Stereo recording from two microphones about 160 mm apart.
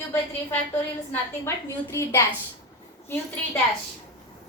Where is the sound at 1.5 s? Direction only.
15° left (ahead or behind).